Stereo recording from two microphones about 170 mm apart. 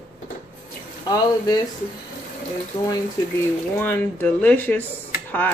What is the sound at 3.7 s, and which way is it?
Speech, 10° left (ahead or behind).